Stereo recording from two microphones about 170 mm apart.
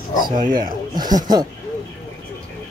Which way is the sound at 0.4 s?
55° right (ahead or behind).